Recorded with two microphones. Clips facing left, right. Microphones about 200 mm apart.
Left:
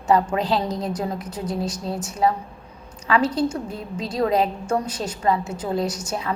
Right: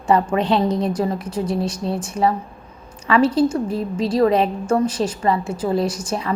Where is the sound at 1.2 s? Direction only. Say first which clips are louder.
Right 5 dB; 25° right (ahead or behind).